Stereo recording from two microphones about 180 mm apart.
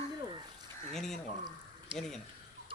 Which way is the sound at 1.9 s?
30° right (ahead or behind).